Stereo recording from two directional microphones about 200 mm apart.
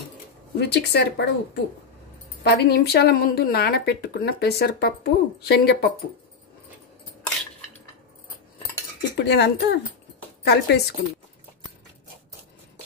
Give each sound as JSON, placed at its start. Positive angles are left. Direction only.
{"t": 0.6, "sound": "speech", "side_deg": 55}
{"t": 9.1, "sound": "speech", "side_deg": 55}